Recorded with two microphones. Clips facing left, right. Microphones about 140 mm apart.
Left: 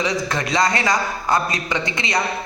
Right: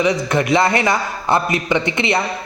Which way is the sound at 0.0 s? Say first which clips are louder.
Right 5 dB; 20° right (ahead or behind).